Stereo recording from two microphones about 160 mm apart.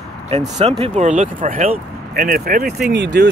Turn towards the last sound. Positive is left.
turn(degrees=-90)